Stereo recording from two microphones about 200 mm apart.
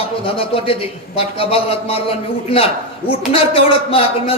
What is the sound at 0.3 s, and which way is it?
A man's voice, 30° left (ahead or behind).